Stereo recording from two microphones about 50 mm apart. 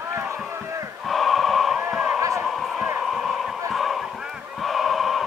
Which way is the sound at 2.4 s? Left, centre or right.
Centre.